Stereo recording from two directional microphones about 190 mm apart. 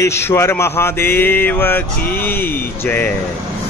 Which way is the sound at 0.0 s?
15° left (ahead or behind).